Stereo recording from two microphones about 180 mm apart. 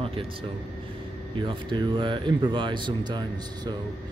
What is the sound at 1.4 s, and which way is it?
Speech, 25° right (ahead or behind).